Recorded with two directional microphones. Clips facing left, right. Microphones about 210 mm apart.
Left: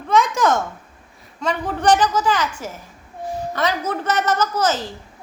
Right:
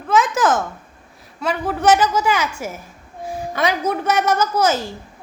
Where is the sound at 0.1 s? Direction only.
5° right (ahead or behind).